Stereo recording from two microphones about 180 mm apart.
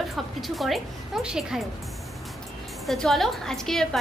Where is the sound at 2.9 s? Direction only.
Centre (ahead or behind).